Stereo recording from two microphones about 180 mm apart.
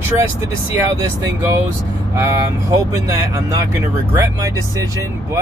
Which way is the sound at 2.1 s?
20° right (ahead or behind).